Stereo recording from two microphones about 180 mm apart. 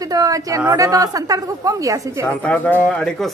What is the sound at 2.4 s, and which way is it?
Speech, 10° left (ahead or behind).